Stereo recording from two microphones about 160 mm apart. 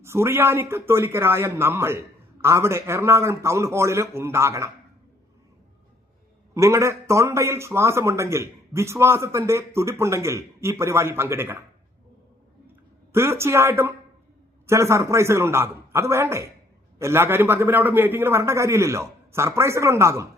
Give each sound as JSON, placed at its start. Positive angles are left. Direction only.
{"t": 0.0, "sound": "a man's voice", "side_deg": -15}
{"t": 6.5, "sound": "a man's voice", "side_deg": -20}
{"t": 13.1, "sound": "a man's voice", "side_deg": -15}